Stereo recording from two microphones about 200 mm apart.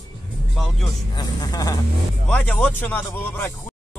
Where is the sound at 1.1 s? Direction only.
20° left (ahead or behind).